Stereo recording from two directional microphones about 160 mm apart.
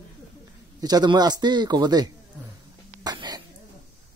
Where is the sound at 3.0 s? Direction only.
25° right (ahead or behind).